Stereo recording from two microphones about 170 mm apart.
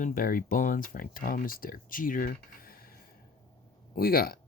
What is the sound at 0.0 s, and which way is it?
Speech, 55° left (ahead or behind).